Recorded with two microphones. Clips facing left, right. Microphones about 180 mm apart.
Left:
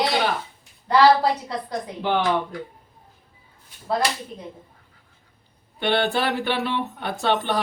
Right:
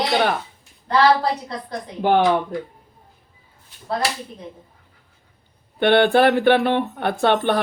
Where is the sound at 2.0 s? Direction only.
50° right (ahead or behind).